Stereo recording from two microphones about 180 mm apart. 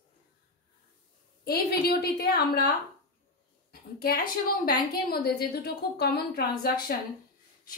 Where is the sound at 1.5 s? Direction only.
60° left (ahead or behind).